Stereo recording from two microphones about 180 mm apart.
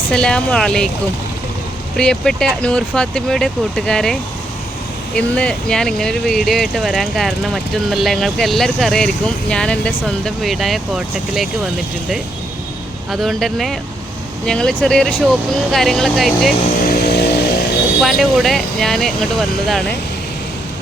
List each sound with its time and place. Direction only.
0.1 s speech: 5° left (ahead or behind)
2.0 s speech: 5° left (ahead or behind)
16.8 s vehicle: 60° left (ahead or behind)
18.0 s speech: centre (ahead or behind)